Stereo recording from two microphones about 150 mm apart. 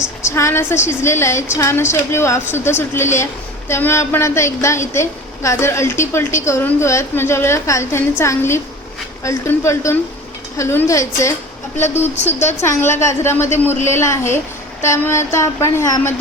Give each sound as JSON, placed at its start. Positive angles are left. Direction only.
{"t": 0.2, "sound": "a woman's voice", "side_deg": 20}
{"t": 12.5, "sound": "a woman's voice", "side_deg": 15}